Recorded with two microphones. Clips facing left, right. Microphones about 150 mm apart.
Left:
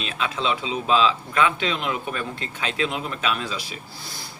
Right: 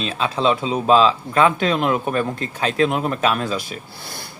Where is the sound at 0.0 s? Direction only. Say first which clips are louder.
Right 6 dB; 35° right (ahead or behind).